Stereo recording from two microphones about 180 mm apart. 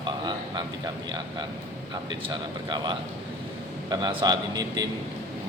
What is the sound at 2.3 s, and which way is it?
Speech, 25° right (ahead or behind).